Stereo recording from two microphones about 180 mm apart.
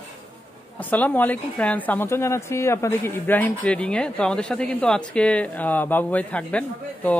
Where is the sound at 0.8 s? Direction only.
10° left (ahead or behind).